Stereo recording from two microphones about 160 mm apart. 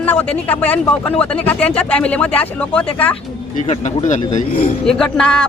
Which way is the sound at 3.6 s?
45° left (ahead or behind).